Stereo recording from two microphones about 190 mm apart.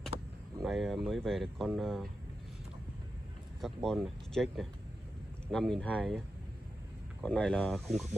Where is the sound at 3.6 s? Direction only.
Centre (ahead or behind).